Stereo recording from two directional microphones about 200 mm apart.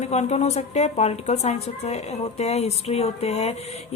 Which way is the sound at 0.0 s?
35° left (ahead or behind).